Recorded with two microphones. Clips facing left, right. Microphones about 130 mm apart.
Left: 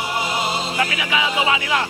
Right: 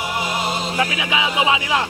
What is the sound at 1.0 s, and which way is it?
Speech, 15° right (ahead or behind).